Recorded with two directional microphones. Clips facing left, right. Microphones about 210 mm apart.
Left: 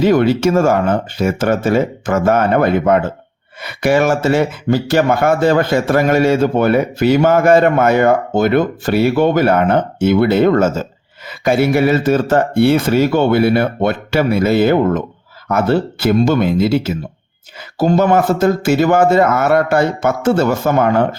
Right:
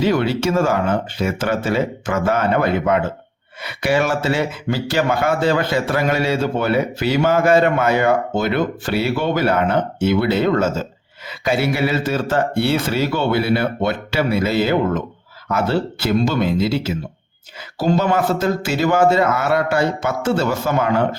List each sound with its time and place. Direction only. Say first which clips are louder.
0.0 s speech: left 6 dB; 50° left (ahead or behind)